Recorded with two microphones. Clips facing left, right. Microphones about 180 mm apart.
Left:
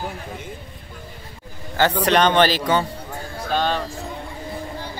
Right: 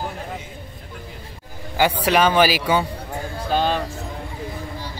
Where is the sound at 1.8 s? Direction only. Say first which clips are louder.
Even; 10° right (ahead or behind).